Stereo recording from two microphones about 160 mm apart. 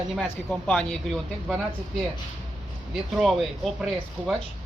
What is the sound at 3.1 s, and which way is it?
Speech, centre (ahead or behind).